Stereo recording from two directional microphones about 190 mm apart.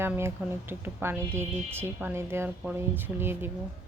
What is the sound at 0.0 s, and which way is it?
Speech, 10° right (ahead or behind).